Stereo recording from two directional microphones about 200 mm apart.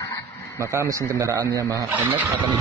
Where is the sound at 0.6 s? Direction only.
15° right (ahead or behind).